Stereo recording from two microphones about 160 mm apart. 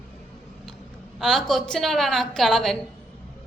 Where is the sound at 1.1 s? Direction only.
Centre (ahead or behind).